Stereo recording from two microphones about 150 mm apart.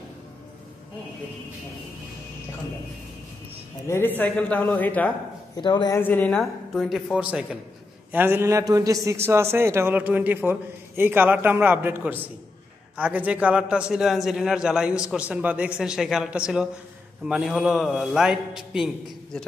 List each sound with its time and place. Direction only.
3.8 s a woman's voice: 15° left (ahead or behind)
5.6 s a man's voice: 30° left (ahead or behind)
5.9 s a woman's voice: 10° left (ahead or behind)
6.4 s a man's voice: centre (ahead or behind)